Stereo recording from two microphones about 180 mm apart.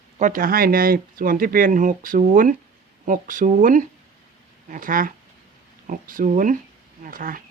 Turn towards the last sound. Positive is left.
turn(degrees=-50)  # may be behind; listen again after turning